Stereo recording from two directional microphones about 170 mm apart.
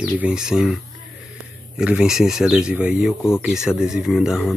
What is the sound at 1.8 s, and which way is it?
Speech, 5° right (ahead or behind).